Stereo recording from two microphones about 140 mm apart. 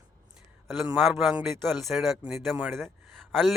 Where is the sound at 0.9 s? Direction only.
Centre (ahead or behind).